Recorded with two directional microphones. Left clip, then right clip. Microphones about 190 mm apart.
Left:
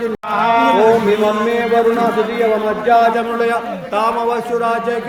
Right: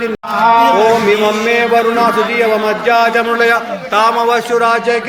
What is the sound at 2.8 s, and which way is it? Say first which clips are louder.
A man's voice: right 1 dB; centre (ahead or behind).